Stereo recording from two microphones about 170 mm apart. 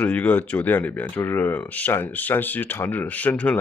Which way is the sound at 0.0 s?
10° left (ahead or behind).